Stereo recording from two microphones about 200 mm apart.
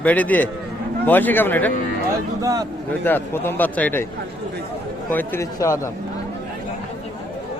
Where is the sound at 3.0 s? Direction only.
10° left (ahead or behind).